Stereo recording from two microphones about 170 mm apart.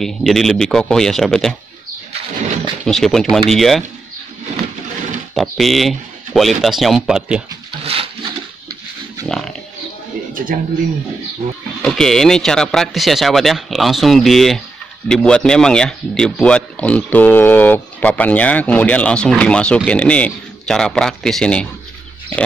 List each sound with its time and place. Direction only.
0.0 s speech: centre (ahead or behind)
2.9 s speech: centre (ahead or behind)
5.3 s speech: centre (ahead or behind)
7.8 s a sound: 35° right (ahead or behind)
10.3 s speech: 55° right (ahead or behind)
11.8 s speech: 5° left (ahead or behind)